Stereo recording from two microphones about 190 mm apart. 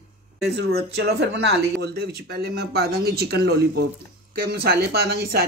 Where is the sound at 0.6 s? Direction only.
60° right (ahead or behind).